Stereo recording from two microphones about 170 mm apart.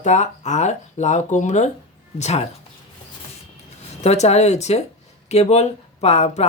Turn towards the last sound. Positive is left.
turn(degrees=40)  # may be behind; listen again after turning